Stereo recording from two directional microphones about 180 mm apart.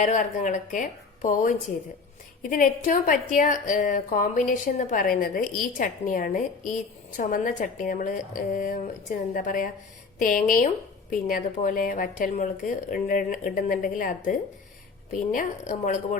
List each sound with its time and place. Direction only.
0.0 s a woman's voice: 40° left (ahead or behind)